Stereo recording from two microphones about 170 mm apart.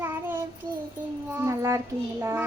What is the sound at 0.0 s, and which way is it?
Child singing, 15° right (ahead or behind).